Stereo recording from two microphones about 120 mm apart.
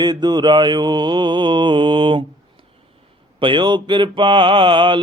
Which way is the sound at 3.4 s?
40° right (ahead or behind).